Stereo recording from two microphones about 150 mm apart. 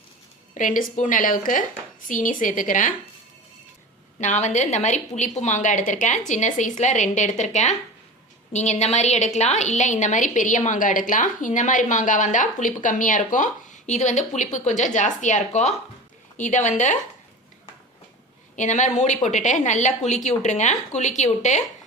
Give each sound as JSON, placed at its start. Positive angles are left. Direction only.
{"t": 0.5, "sound": "a woman's voice", "side_deg": 65}
{"t": 4.2, "sound": "a woman's voice", "side_deg": 50}
{"t": 18.5, "sound": "speech", "side_deg": 55}